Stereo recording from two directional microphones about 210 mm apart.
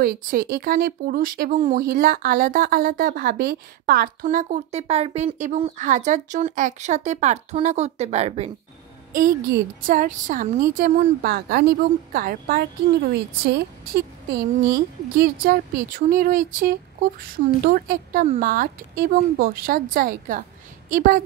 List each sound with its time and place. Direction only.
0.0 s speech: 45° right (ahead or behind)
9.1 s speech: 40° right (ahead or behind)